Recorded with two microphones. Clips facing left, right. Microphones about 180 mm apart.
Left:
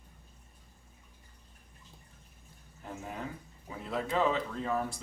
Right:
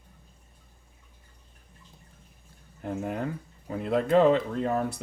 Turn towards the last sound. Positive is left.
turn(degrees=-60)  # may be behind; listen again after turning